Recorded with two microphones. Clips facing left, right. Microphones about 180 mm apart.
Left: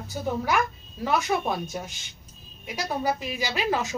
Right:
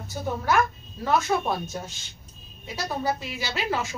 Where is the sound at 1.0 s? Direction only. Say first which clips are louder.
Right 1 dB; 15° left (ahead or behind).